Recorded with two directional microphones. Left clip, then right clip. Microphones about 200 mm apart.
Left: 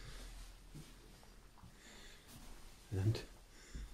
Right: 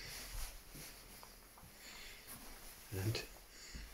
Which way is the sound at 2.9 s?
25° left (ahead or behind).